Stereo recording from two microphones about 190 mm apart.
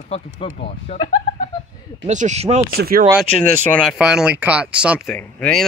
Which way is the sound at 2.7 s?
55° right (ahead or behind).